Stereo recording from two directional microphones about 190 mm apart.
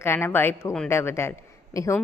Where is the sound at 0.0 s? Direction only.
10° left (ahead or behind).